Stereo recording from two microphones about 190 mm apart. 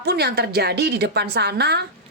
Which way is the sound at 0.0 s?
60° right (ahead or behind).